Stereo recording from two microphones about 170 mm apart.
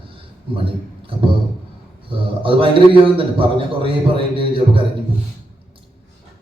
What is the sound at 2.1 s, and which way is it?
A man's voice, 30° right (ahead or behind).